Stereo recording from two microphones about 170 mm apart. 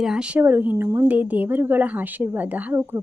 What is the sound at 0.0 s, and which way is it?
A woman's voice, 5° right (ahead or behind).